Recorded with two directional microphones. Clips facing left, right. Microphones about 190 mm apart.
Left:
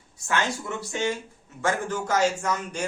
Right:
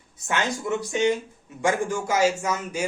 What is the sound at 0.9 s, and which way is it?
Speech, 20° right (ahead or behind).